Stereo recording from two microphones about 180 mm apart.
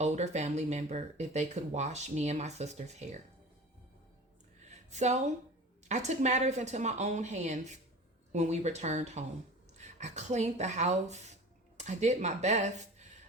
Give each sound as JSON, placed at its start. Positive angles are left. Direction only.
{"t": 0.0, "sound": "speech", "side_deg": -40}
{"t": 4.7, "sound": "a sound", "side_deg": -40}
{"t": 5.9, "sound": "speech", "side_deg": -40}